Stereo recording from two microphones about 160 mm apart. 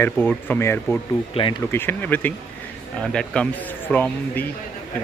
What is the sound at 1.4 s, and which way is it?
Speech, 35° left (ahead or behind).